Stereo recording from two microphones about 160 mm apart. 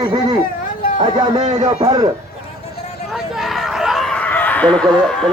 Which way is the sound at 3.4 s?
Centre (ahead or behind).